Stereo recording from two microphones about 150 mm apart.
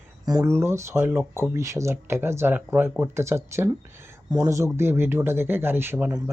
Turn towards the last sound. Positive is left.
turn(degrees=-15)  # may be behind; listen again after turning